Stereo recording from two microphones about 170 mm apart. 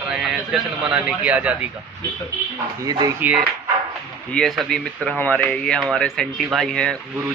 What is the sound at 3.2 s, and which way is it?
Speech, 10° right (ahead or behind).